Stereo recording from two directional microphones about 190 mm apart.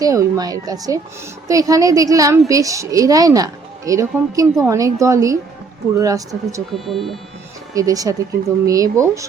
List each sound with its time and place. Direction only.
0.0 s speech: 15° right (ahead or behind)
6.8 s speech: centre (ahead or behind)
7.7 s speech: 20° right (ahead or behind)